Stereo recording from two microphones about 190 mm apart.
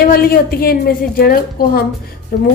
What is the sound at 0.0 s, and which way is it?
A woman's voice, 55° left (ahead or behind).